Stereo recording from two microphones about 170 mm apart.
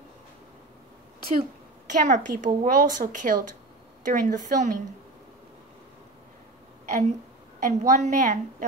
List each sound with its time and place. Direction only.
1.9 s a woman's voice: 45° right (ahead or behind)
6.9 s a woman's voice: 45° right (ahead or behind)